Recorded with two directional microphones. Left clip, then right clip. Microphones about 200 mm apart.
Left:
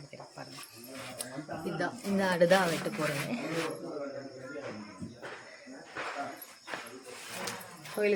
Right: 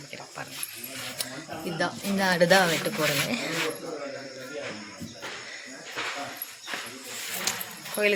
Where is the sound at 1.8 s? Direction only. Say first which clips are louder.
Right 6 dB; 25° right (ahead or behind).